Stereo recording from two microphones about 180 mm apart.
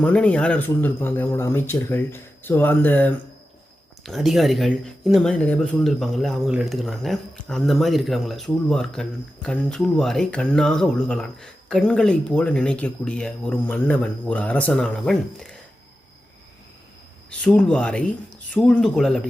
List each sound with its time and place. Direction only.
0.0 s speech: 5° left (ahead or behind)
4.0 s speech: centre (ahead or behind)
17.4 s speech: 5° left (ahead or behind)